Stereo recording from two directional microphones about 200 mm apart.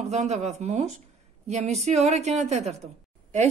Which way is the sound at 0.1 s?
35° right (ahead or behind).